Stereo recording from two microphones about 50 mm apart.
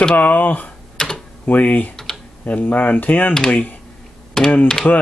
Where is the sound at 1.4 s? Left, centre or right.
Left.